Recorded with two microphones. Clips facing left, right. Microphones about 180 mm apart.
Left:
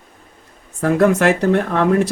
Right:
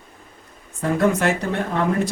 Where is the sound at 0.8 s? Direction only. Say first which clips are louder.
Left 5 dB; 75° left (ahead or behind).